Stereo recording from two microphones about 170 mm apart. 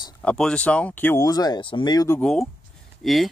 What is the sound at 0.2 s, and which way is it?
Speech, 5° left (ahead or behind).